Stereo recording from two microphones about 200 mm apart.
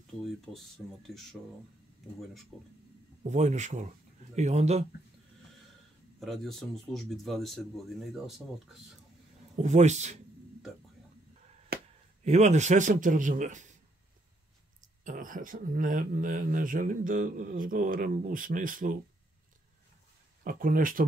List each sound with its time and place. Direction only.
0.5 s speech: 5° left (ahead or behind)
2.5 s speech: centre (ahead or behind)
3.3 s a man's voice: 35° right (ahead or behind)
6.1 s speech: centre (ahead or behind)
9.6 s a man's voice: 35° right (ahead or behind)
11.7 s chop: 50° right (ahead or behind)
12.3 s a man's voice: 35° right (ahead or behind)
15.0 s speech: 40° right (ahead or behind)
20.4 s speech: 45° right (ahead or behind)